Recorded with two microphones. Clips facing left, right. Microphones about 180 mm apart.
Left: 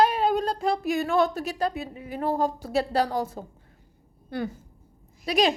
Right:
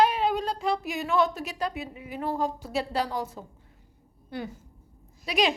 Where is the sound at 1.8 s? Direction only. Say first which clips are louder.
Left 3 dB; 40° left (ahead or behind).